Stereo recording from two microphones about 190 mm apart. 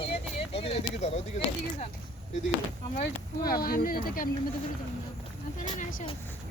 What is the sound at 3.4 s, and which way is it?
Speech, 50° left (ahead or behind).